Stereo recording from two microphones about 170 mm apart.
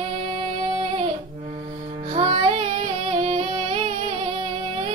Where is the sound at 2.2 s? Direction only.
35° right (ahead or behind).